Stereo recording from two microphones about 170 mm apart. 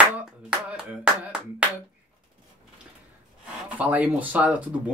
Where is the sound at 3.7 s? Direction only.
10° right (ahead or behind).